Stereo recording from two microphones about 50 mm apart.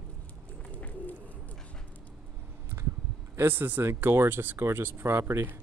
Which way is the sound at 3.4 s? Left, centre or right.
Right.